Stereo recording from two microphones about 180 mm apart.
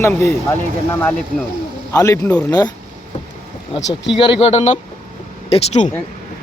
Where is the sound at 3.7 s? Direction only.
30° left (ahead or behind).